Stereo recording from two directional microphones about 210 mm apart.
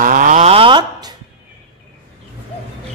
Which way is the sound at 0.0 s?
40° right (ahead or behind).